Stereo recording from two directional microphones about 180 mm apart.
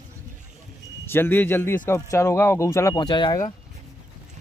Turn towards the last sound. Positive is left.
turn(degrees=25)  # may be behind; listen again after turning